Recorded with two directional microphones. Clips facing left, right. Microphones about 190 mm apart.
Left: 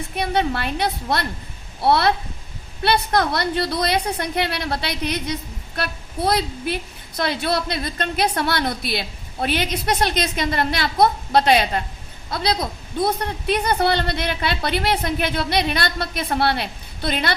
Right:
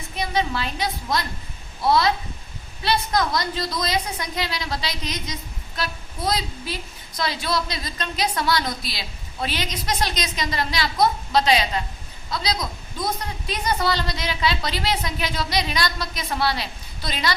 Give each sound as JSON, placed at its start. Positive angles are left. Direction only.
{"t": 0.2, "sound": "a man's voice", "side_deg": 60}